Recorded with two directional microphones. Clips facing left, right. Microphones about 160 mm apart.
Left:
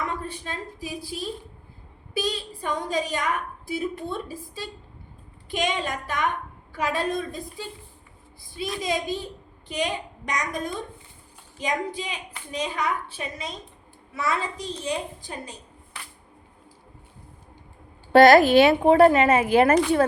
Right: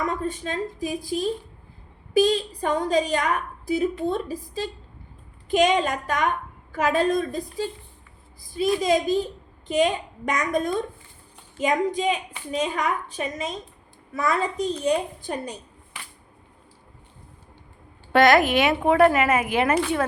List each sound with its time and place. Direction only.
0.1 s a woman's voice: 45° right (ahead or behind)
8.5 s a woman's voice: 45° right (ahead or behind)
18.1 s speech: 35° left (ahead or behind)